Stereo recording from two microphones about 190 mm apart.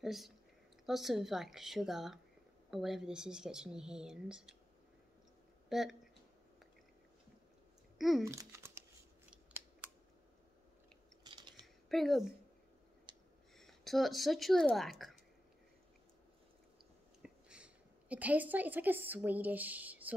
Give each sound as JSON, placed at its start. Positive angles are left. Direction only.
{"t": 0.0, "sound": "speech", "side_deg": 0}
{"t": 5.7, "sound": "speech", "side_deg": 0}
{"t": 8.2, "sound": "a child's voice", "side_deg": -15}
{"t": 11.2, "sound": "chewing", "side_deg": -25}
{"t": 11.6, "sound": "a sound", "side_deg": 0}
{"t": 13.1, "sound": "a sound", "side_deg": -25}
{"t": 13.6, "sound": "speech", "side_deg": 0}
{"t": 17.2, "sound": "a woman's voice", "side_deg": -5}